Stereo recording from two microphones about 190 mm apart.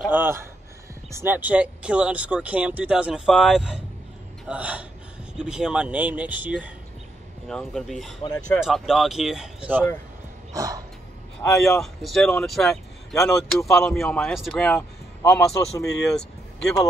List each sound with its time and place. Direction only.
0.1 s speech: 10° right (ahead or behind)
10.5 s music: 20° right (ahead or behind)
11.4 s a man's voice: 15° left (ahead or behind)
11.8 s speech: centre (ahead or behind)